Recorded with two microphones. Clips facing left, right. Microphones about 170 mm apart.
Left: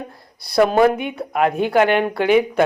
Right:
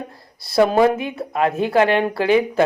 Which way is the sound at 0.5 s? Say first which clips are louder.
Even; 30° right (ahead or behind).